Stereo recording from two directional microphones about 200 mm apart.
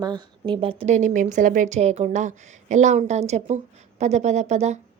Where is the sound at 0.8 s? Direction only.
35° right (ahead or behind).